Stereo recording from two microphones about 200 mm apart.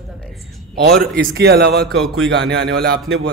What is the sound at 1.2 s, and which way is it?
Speech, 50° right (ahead or behind).